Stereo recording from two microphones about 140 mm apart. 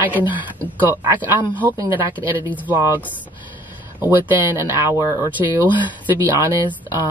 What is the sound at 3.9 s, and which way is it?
Speech, 15° right (ahead or behind).